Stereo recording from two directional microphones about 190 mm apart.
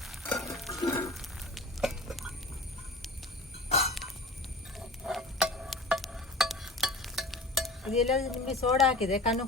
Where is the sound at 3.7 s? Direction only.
35° left (ahead or behind).